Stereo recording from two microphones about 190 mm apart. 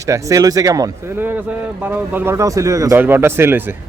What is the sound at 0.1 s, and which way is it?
Speech, 15° right (ahead or behind).